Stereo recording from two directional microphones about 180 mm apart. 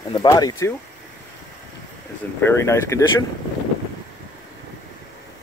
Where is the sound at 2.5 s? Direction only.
15° left (ahead or behind).